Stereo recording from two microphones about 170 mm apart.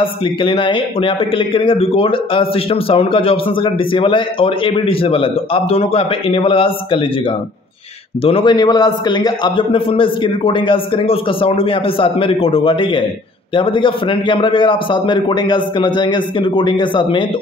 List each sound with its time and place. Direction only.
0.0 s a man's voice: 30° left (ahead or behind)
8.2 s a man's voice: 35° left (ahead or behind)